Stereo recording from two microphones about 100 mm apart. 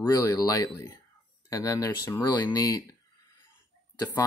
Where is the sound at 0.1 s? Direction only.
35° left (ahead or behind).